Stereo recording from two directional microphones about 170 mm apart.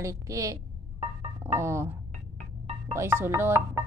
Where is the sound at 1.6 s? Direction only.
15° right (ahead or behind).